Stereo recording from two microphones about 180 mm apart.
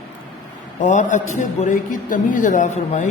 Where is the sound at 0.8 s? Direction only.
40° left (ahead or behind).